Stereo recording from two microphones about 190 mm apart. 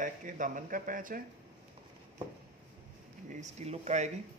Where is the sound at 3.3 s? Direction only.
35° right (ahead or behind).